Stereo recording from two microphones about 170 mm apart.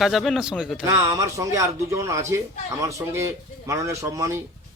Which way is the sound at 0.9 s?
15° right (ahead or behind).